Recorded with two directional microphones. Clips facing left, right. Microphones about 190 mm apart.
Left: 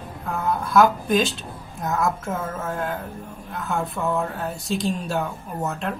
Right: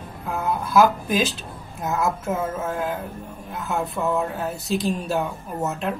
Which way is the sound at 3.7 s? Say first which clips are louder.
Right 1 dB; centre (ahead or behind).